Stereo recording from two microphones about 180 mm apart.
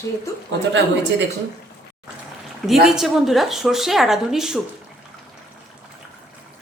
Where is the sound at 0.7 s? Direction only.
90° right.